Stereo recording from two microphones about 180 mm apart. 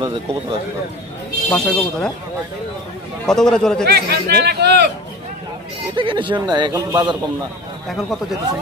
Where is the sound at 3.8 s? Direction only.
65° right (ahead or behind).